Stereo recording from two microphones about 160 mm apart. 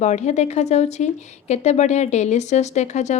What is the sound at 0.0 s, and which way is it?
A woman's voice, 45° left (ahead or behind).